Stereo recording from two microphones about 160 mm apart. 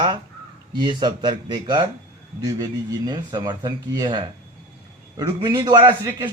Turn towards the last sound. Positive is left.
turn(degrees=-30)  # may be behind; listen again after turning